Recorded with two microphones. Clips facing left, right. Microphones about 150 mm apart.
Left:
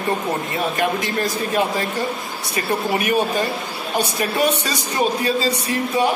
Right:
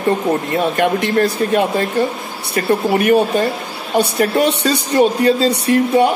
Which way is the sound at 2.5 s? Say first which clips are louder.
Right 6 dB; 60° right (ahead or behind).